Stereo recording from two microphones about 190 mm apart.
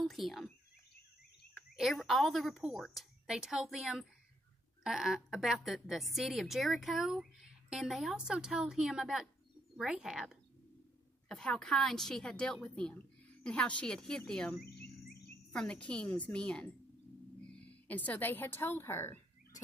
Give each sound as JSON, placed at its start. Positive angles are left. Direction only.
{"t": 0.0, "sound": "a sound", "side_deg": 0}
{"t": 1.8, "sound": "a woman's voice", "side_deg": 0}
{"t": 14.6, "sound": "insect", "side_deg": 60}
{"t": 15.5, "sound": "a woman's voice", "side_deg": 5}